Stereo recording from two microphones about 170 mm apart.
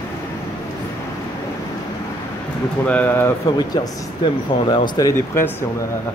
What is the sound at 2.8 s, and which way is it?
Speech, 10° left (ahead or behind).